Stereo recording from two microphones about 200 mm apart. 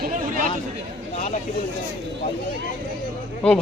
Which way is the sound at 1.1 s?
35° left (ahead or behind).